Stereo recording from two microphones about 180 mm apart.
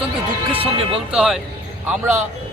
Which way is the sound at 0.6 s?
30° right (ahead or behind).